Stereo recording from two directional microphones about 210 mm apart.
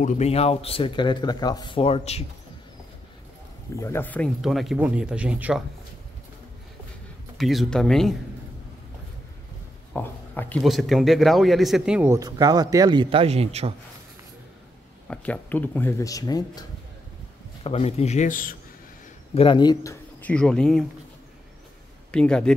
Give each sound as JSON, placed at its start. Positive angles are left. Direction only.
{"t": 0.0, "sound": "speech", "side_deg": 30}
{"t": 3.7, "sound": "speech", "side_deg": 15}
{"t": 7.3, "sound": "speech", "side_deg": 0}
{"t": 9.9, "sound": "a man's voice", "side_deg": 10}
{"t": 15.0, "sound": "speech", "side_deg": 5}
{"t": 17.6, "sound": "a man's voice", "side_deg": 30}
{"t": 19.3, "sound": "speech", "side_deg": 25}
{"t": 22.1, "sound": "speech", "side_deg": 5}